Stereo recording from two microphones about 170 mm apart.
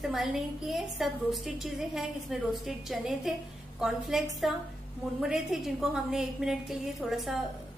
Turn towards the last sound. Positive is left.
turn(degrees=0)  # may be behind; listen again after turning